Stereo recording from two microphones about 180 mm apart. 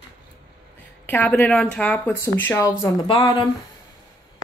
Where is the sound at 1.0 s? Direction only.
10° left (ahead or behind); by 3.5 s 25° left (ahead or behind).